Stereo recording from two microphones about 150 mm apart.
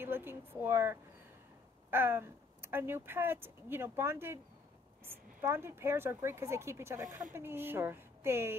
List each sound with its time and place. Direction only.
0.0 s a woman's voice: 15° right (ahead or behind)